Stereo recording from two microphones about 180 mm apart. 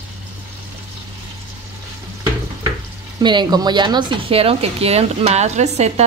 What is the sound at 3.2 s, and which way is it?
A woman's voice, 25° right (ahead or behind).